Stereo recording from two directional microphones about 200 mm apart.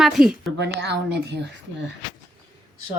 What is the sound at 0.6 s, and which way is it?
Speech, 60° right (ahead or behind).